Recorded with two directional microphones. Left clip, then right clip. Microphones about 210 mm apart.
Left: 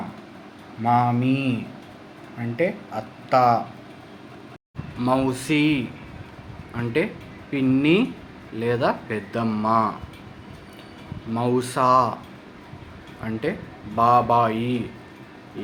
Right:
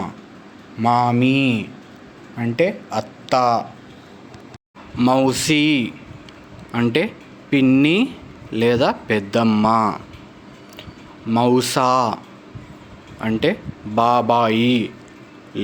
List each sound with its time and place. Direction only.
0.8 s speech: 45° right (ahead or behind)
4.9 s speech: 40° right (ahead or behind)
11.3 s speech: 40° right (ahead or behind)
13.2 s speech: 50° right (ahead or behind)